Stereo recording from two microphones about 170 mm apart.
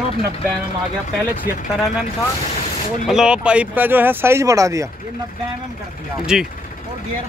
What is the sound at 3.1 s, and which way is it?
Speech, 5° right (ahead or behind).